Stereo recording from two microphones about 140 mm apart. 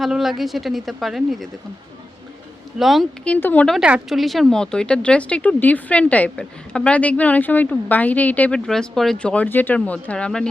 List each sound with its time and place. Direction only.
0.0 s speech: centre (ahead or behind)
2.7 s speech: centre (ahead or behind)
3.3 s speech: 10° left (ahead or behind)
3.8 s speech: 5° right (ahead or behind)